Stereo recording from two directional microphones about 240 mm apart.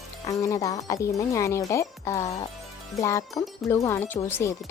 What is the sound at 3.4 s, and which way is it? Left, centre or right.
Speech, centre.